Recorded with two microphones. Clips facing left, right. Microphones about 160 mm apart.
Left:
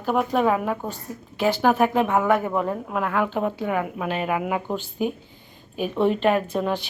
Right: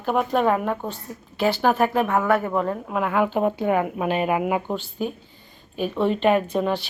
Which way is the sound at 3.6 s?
30° right (ahead or behind).